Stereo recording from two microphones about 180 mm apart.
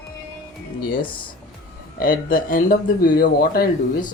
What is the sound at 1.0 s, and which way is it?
Speech, 30° left (ahead or behind).